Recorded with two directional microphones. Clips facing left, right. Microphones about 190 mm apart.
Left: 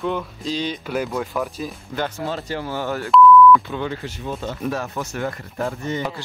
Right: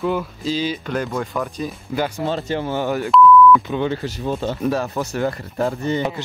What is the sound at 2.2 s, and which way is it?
Speech, 25° right (ahead or behind).